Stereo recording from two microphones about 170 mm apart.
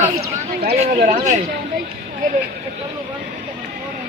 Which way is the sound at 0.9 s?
50° right (ahead or behind).